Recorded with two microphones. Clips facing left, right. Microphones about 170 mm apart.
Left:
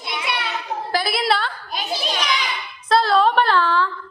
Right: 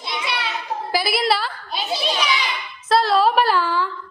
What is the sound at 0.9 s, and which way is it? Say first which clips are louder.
Speech: right 1 dB; 5° right (ahead or behind).